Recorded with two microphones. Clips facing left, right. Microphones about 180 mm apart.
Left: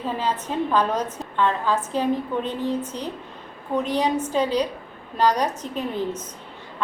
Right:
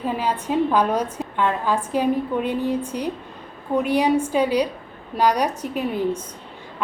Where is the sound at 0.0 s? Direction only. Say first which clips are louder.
Right 2 dB; 10° right (ahead or behind).